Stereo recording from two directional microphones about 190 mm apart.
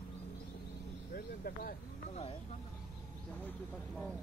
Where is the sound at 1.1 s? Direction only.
50° left (ahead or behind).